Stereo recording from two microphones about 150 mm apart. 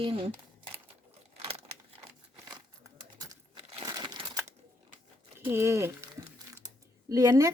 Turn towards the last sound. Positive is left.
turn(degrees=-25)  # may be behind; listen again after turning